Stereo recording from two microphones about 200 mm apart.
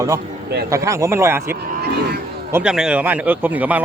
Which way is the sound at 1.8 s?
55° right (ahead or behind).